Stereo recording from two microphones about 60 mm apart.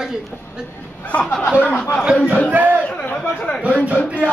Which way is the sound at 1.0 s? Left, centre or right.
Left.